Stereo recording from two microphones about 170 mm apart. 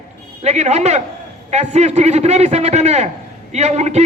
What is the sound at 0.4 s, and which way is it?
A man's voice, 40° right (ahead or behind).